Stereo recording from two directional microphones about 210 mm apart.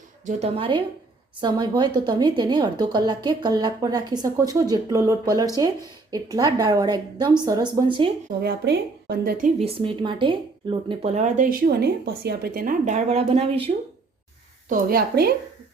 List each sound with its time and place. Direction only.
0.3 s a woman's voice: 30° right (ahead or behind)
8.4 s a woman's voice: 50° right (ahead or behind)
9.6 s speech: 25° right (ahead or behind)
14.7 s a woman's voice: 40° right (ahead or behind)